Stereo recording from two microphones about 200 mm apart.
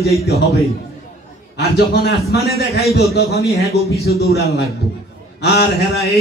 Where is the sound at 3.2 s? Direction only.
50° left (ahead or behind).